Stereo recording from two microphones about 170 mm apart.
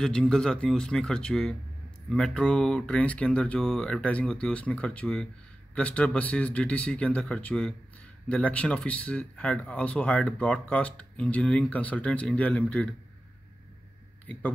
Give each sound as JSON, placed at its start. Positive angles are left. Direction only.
{"t": 0.0, "sound": "a man's voice", "side_deg": 5}